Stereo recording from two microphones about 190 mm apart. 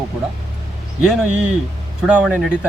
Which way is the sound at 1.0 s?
5° right (ahead or behind).